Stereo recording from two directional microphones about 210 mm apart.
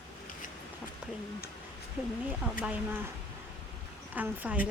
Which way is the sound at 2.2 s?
5° right (ahead or behind).